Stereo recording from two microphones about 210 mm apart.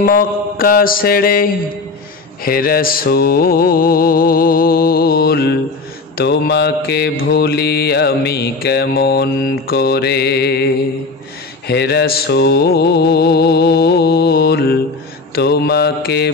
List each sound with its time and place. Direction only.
0.0 s mantra: 45° left (ahead or behind)